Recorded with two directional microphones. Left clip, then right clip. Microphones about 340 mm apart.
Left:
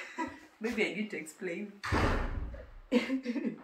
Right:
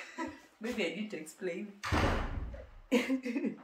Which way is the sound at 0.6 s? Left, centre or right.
Centre.